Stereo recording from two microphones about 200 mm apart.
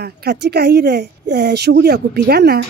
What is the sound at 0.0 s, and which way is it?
A woman's voice, 55° right (ahead or behind).